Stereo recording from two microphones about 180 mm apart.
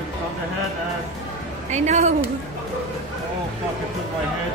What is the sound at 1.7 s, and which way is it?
Speech, 40° right (ahead or behind).